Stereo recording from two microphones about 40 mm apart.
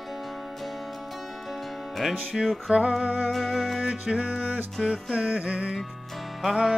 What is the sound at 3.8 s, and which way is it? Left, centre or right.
Music, right.